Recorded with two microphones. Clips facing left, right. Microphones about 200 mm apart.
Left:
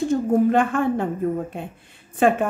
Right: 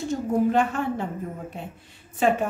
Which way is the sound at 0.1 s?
55° left (ahead or behind).